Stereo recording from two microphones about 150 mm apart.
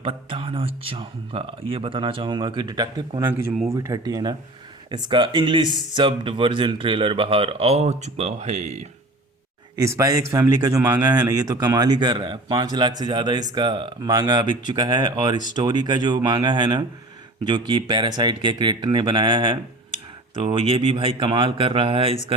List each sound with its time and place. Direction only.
0.0 s speech: 35° right (ahead or behind)
9.7 s speech: 20° right (ahead or behind); by 22.2 s 40° right (ahead or behind)